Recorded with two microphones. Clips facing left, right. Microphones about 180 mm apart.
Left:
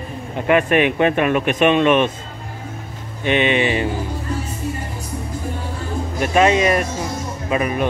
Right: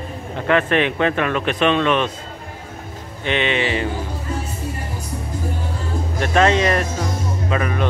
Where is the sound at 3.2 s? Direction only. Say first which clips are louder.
Left 3 dB; 15° left (ahead or behind).